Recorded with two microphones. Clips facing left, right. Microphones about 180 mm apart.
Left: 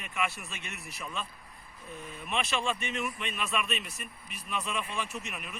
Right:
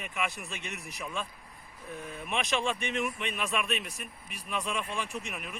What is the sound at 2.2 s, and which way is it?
Speech, 15° right (ahead or behind).